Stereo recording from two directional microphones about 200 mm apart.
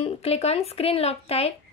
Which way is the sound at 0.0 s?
30° left (ahead or behind).